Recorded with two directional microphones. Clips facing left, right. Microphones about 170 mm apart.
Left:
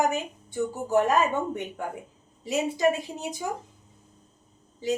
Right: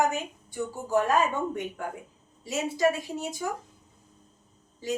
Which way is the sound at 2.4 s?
15° left (ahead or behind).